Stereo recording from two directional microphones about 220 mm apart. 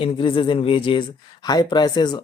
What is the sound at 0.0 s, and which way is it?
Speech, 25° left (ahead or behind).